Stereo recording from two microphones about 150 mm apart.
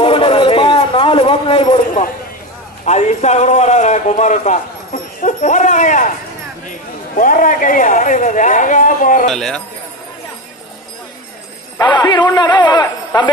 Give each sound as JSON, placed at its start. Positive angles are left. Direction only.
{"t": 0.0, "sound": "a sound", "side_deg": 35}
{"t": 2.8, "sound": "a man's voice", "side_deg": 50}
{"t": 7.2, "sound": "a man's voice", "side_deg": 65}
{"t": 9.3, "sound": "speech", "side_deg": 0}
{"t": 11.8, "sound": "a man's voice", "side_deg": 30}